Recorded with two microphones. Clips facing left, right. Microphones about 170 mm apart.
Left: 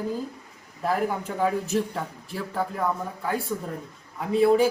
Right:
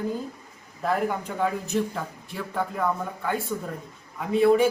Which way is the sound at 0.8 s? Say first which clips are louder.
Even; 5° left (ahead or behind).